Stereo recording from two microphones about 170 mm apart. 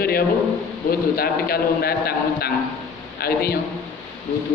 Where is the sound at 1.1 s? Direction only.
65° left (ahead or behind).